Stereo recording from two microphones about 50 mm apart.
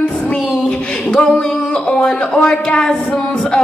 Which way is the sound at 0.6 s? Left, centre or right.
Centre.